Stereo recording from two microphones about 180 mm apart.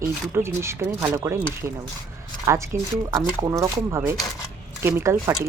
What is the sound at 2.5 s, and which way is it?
Speech, 15° right (ahead or behind).